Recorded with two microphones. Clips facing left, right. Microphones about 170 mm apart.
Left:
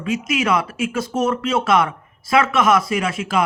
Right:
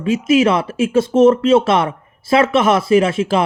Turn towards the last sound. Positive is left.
turn(degrees=-30)  # may be behind; listen again after turning